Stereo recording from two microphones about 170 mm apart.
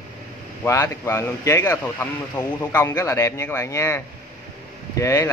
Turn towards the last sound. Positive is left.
turn(degrees=15)  # may be behind; listen again after turning